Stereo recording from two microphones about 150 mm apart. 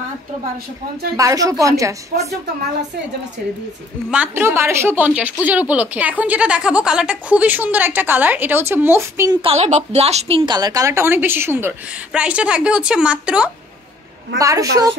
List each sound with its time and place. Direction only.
1.1 s a woman's voice: 20° right (ahead or behind)
4.1 s speech: 10° right (ahead or behind)
9.4 s speech: 45° right (ahead or behind); by 13.5 s 5° right (ahead or behind)
14.4 s a woman's voice: 20° right (ahead or behind)